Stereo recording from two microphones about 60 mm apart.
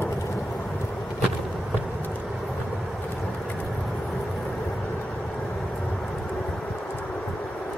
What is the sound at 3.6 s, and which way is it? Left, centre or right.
Vehicle, centre.